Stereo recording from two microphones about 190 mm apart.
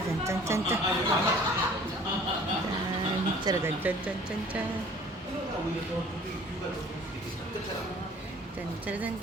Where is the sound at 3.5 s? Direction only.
20° right (ahead or behind).